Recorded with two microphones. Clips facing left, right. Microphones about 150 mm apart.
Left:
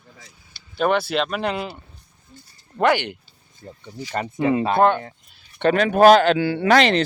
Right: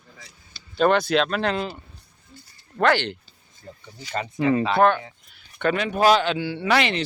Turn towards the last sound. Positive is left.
turn(degrees=50)  # may be behind; listen again after turning